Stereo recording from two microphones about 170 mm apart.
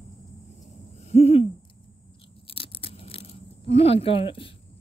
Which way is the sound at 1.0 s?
40° left (ahead or behind).